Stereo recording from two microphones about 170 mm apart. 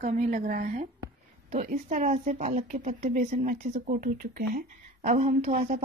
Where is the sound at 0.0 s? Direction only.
50° right (ahead or behind).